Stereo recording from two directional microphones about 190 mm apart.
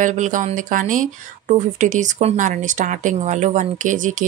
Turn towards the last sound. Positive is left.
turn(degrees=-40)  # may be behind; listen again after turning